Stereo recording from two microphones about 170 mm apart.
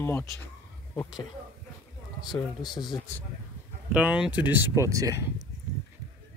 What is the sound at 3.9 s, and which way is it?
Speech, 5° right (ahead or behind).